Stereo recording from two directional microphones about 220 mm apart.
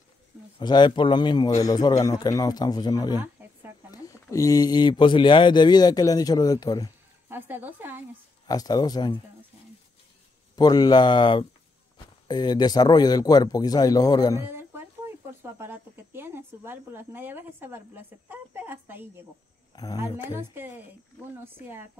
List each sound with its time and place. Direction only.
0.6 s speech: 20° left (ahead or behind)
7.2 s speech: 10° right (ahead or behind)
8.5 s speech: 15° left (ahead or behind)
10.5 s speech: 20° left (ahead or behind)
15.6 s speech: 10° right (ahead or behind)
19.7 s speech: 15° left (ahead or behind)
20.2 s speech: 10° right (ahead or behind)